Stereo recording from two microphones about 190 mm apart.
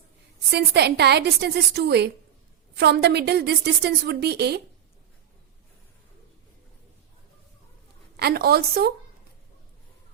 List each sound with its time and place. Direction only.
0.5 s a woman's voice: 60° right (ahead or behind)
8.1 s a woman's voice: 55° right (ahead or behind)